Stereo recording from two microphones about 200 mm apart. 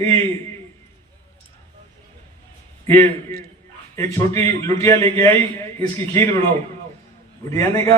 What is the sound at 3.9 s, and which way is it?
A man's voice, 15° left (ahead or behind).